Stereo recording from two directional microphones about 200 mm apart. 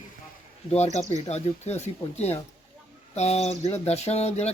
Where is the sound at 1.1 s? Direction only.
35° left (ahead or behind).